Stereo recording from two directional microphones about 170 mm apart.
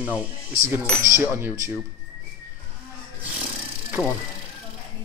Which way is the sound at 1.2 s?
15° right (ahead or behind).